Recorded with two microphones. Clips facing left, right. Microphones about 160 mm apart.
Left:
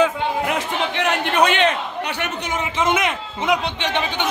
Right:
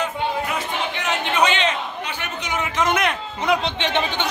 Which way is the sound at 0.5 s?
60° left (ahead or behind).